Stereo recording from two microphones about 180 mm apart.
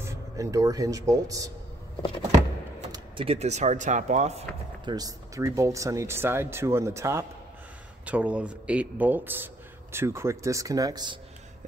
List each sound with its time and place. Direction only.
0.0 s speech: 15° right (ahead or behind)
2.9 s speech: 30° right (ahead or behind)
4.9 s speech: 20° right (ahead or behind)